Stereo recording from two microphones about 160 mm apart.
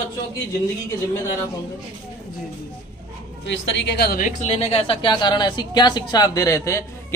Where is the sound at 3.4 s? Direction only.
90° left; by 4.3 s 65° left (ahead or behind).